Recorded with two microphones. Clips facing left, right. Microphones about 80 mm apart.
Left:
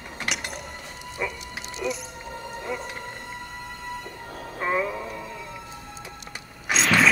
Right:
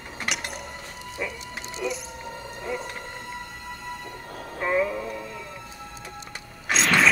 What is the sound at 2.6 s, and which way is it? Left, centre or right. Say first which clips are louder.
Music: right 1 dB; centre.